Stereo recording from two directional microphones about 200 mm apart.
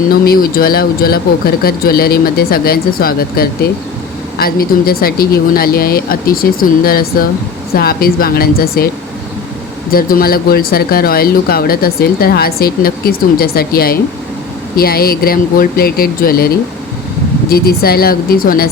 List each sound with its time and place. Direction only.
0.1 s speech: 50° left (ahead or behind)
9.9 s speech: 45° left (ahead or behind)
17.5 s speech: 50° left (ahead or behind)